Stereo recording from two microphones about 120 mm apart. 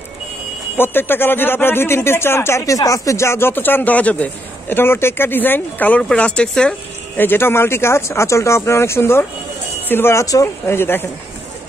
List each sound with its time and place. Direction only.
0.7 s speech: 15° left (ahead or behind)
7.2 s speech: 20° left (ahead or behind)